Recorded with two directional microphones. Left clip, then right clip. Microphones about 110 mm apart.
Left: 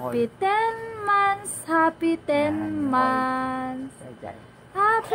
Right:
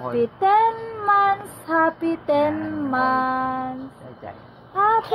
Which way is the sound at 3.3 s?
25° left (ahead or behind).